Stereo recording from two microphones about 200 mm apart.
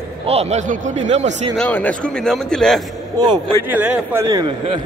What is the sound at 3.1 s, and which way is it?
Speech, 20° right (ahead or behind).